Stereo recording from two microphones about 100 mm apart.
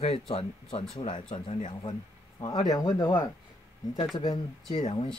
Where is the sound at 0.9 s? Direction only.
55° left (ahead or behind).